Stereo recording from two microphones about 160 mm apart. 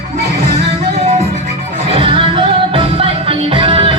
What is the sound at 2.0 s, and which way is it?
Music, 35° right (ahead or behind).